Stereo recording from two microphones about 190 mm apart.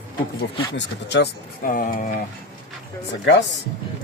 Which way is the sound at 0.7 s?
70° left (ahead or behind).